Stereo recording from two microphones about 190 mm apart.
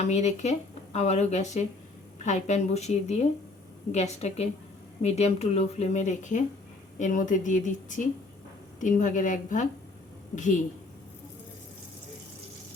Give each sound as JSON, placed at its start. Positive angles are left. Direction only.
{"t": 0.0, "sound": "speech", "side_deg": 35}